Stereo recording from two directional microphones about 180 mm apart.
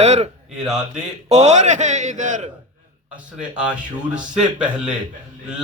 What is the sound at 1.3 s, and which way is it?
Speech, 35° right (ahead or behind).